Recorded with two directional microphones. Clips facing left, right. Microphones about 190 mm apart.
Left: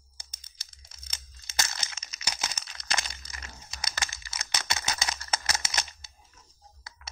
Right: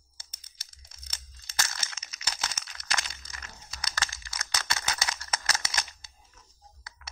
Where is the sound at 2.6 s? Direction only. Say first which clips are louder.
Left 1 dB; 25° left (ahead or behind).